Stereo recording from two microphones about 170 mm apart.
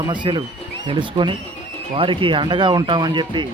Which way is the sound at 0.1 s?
25° right (ahead or behind).